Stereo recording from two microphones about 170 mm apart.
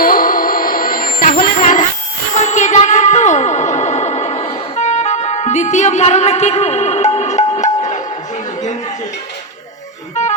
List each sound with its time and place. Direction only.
0.0 s music: 55° left (ahead or behind)
10.2 s music: 45° left (ahead or behind)